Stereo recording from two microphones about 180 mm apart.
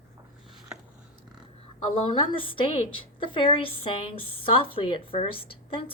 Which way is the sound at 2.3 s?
30° left (ahead or behind).